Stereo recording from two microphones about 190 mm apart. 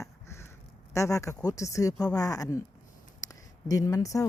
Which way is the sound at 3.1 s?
20° left (ahead or behind).